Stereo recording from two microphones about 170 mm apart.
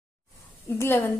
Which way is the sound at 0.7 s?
15° left (ahead or behind).